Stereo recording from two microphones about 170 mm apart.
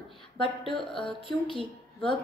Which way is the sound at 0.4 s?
30° left (ahead or behind).